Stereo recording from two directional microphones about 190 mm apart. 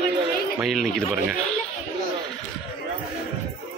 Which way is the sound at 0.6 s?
Centre (ahead or behind).